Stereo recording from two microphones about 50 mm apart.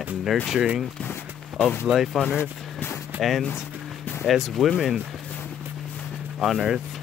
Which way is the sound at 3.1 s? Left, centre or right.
Right.